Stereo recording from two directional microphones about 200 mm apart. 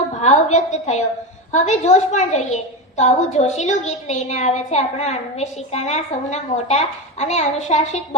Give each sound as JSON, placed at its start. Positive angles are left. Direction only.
{"t": 0.2, "sound": "a woman's voice", "side_deg": 35}